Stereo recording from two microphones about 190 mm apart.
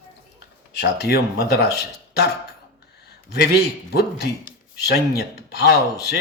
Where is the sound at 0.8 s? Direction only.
55° left (ahead or behind).